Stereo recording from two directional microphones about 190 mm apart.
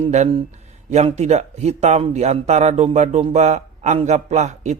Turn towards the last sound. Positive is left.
turn(degrees=-35)  # may be behind; listen again after turning